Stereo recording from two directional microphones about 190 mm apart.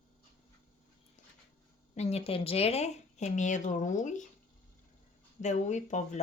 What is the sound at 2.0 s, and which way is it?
A woman's voice, 35° left (ahead or behind).